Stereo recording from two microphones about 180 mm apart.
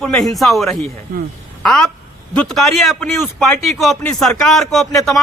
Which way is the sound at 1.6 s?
5° left (ahead or behind).